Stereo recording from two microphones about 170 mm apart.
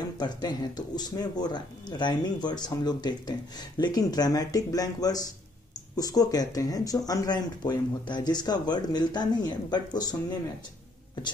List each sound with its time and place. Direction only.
0.2 s speech: 25° left (ahead or behind)